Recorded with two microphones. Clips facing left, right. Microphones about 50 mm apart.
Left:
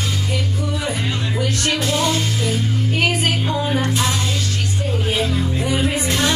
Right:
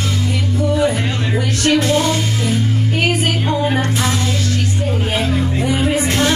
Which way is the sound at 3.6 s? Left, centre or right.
Right.